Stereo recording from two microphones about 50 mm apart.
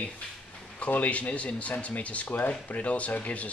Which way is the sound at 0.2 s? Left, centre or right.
Left.